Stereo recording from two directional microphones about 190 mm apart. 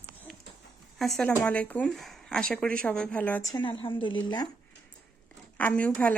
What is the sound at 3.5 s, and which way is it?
Speech, 25° left (ahead or behind).